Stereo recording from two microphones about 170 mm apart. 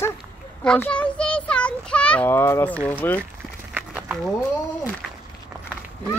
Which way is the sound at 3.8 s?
10° right (ahead or behind).